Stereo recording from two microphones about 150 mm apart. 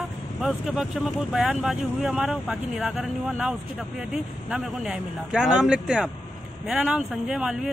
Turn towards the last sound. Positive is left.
turn(degrees=-5)  # may be behind; listen again after turning